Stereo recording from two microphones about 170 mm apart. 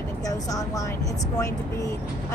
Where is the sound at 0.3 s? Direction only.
20° left (ahead or behind).